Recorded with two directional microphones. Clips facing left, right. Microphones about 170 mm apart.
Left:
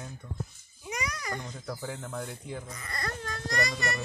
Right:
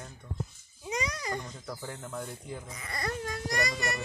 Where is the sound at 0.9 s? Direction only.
25° right (ahead or behind).